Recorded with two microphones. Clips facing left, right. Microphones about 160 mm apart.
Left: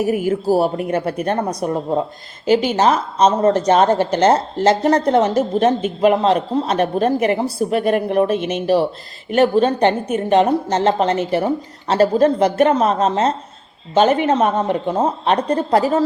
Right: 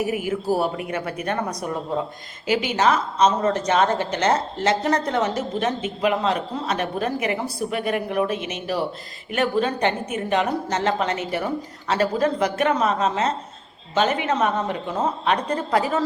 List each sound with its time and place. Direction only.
0.1 s a woman's voice: 35° left (ahead or behind)